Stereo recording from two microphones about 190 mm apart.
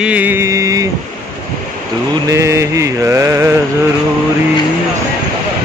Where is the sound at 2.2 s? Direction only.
15° right (ahead or behind).